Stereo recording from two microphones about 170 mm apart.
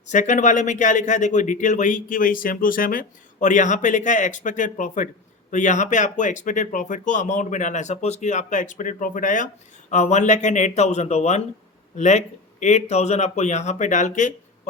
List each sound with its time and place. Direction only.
0.1 s speech: 45° left (ahead or behind)